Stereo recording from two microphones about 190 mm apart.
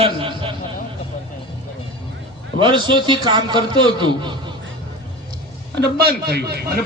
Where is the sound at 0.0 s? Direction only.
25° right (ahead or behind).